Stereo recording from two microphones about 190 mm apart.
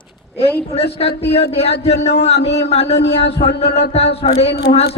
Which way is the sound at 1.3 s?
30° left (ahead or behind).